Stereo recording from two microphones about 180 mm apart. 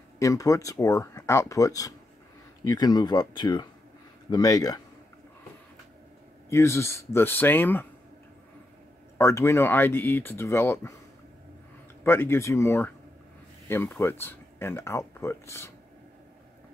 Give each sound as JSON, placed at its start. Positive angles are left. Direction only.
{"t": 0.2, "sound": "speech", "side_deg": 20}
{"t": 6.5, "sound": "speech", "side_deg": 15}
{"t": 9.2, "sound": "speech", "side_deg": 15}
{"t": 12.0, "sound": "speech", "side_deg": 15}